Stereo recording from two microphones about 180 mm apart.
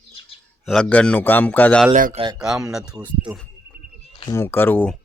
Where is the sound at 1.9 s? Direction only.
50° right (ahead or behind).